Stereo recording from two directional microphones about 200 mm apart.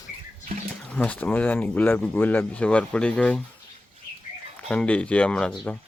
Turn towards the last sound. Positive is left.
turn(degrees=5)  # may be behind; listen again after turning